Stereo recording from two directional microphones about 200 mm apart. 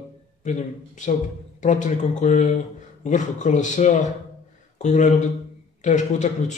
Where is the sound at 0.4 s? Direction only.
35° left (ahead or behind).